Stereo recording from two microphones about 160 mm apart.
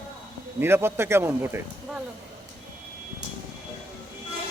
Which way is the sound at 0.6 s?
15° right (ahead or behind).